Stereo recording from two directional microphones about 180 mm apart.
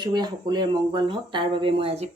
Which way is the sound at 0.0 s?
25° right (ahead or behind).